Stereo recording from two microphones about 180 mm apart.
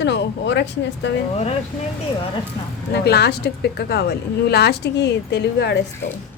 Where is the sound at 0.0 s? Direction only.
75° left (ahead or behind).